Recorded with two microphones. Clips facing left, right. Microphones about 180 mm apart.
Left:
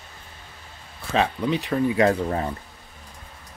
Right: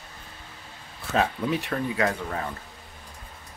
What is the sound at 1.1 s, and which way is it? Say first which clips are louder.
Speech: left 2 dB; centre (ahead or behind).